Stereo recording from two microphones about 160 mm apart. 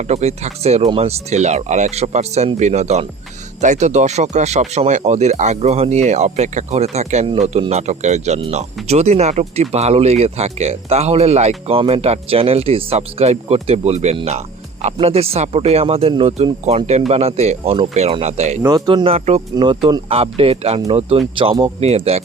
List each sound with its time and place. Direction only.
0.0 s speech: 45° right (ahead or behind)
18.6 s speech: 25° right (ahead or behind)
19.5 s speech: 30° right (ahead or behind)